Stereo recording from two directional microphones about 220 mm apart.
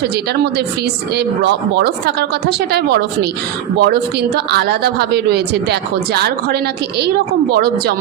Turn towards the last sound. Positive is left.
turn(degrees=-45)  # may be behind; listen again after turning